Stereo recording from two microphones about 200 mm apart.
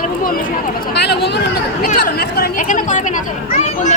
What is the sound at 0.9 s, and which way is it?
Speech, 55° left (ahead or behind).